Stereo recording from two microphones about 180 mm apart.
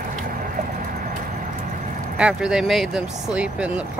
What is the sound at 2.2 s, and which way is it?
Speech, 5° right (ahead or behind).